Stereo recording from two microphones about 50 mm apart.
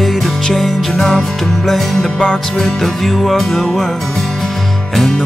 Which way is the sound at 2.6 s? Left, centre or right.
Centre.